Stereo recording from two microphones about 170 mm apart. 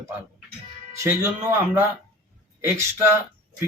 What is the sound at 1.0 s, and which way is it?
Speech, 15° right (ahead or behind).